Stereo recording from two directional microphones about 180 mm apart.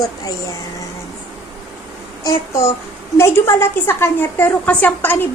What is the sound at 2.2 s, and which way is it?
A woman's voice, 15° left (ahead or behind).